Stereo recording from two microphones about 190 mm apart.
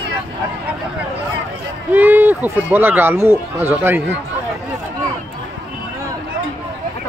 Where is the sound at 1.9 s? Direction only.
10° right (ahead or behind).